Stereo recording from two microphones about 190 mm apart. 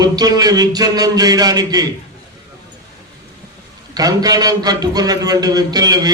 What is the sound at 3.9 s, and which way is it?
A man's voice, 20° right (ahead or behind).